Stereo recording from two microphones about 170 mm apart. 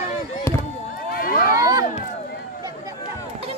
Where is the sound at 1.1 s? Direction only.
60° left (ahead or behind).